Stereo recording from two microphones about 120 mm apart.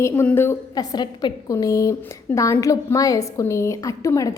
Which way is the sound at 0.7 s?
35° left (ahead or behind).